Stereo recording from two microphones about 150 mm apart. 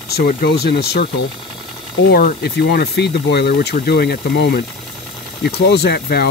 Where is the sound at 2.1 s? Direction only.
90° left.